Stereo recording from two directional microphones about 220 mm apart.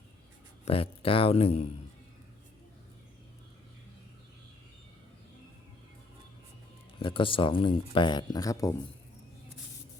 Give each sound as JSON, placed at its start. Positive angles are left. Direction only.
{"t": 0.6, "sound": "speech", "side_deg": 25}
{"t": 7.0, "sound": "speech", "side_deg": 25}